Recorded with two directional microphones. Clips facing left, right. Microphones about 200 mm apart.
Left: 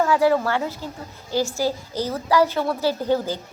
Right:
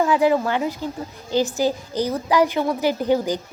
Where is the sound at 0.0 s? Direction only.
15° right (ahead or behind).